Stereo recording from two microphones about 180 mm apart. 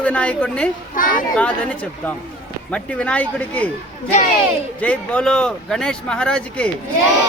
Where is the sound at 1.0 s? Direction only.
50° left (ahead or behind).